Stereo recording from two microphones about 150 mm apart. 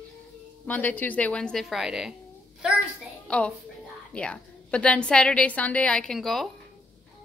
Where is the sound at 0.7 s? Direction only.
10° left (ahead or behind).